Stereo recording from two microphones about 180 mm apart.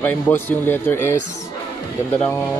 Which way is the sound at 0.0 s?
10° left (ahead or behind).